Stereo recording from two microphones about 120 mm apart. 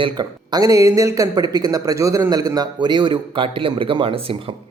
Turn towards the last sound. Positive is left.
turn(degrees=-50)  # may be behind; listen again after turning